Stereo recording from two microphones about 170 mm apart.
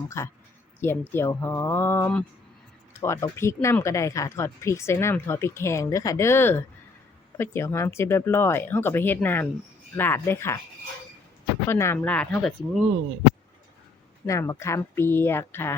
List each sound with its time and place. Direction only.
0.2 s speech: 15° left (ahead or behind)
11.7 s speech: 15° left (ahead or behind)
14.3 s speech: 20° left (ahead or behind)